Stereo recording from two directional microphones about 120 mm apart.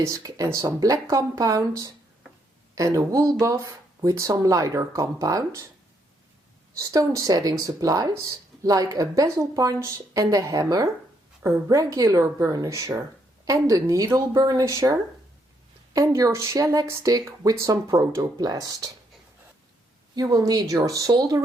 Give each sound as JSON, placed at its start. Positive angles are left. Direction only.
{"t": 0.0, "sound": "speech", "side_deg": -25}
{"t": 6.7, "sound": "speech", "side_deg": -30}
{"t": 20.1, "sound": "speech", "side_deg": -30}